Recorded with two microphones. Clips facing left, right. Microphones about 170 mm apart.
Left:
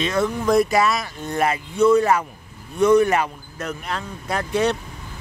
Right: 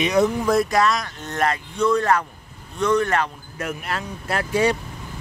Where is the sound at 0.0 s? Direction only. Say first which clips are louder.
Right 3 dB; 15° right (ahead or behind).